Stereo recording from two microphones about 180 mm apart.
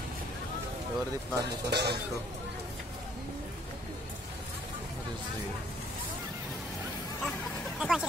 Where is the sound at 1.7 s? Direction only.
65° right (ahead or behind).